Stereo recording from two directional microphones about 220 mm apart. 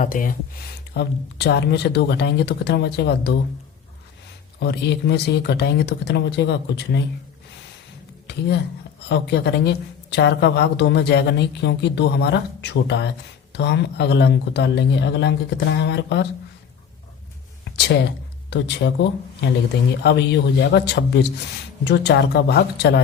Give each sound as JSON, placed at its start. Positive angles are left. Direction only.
{"t": 0.0, "sound": "speech", "side_deg": 40}
{"t": 0.9, "sound": "a woman's voice", "side_deg": 50}
{"t": 4.6, "sound": "a woman's voice", "side_deg": 50}
{"t": 8.3, "sound": "a woman's voice", "side_deg": 50}
{"t": 18.5, "sound": "a woman's voice", "side_deg": 50}